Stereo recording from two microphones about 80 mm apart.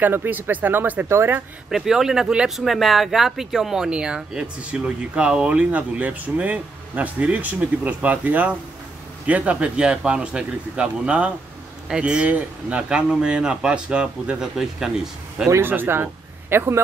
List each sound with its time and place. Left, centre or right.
0.0 s speech: right
1.7 s speech: centre
15.5 s speech: right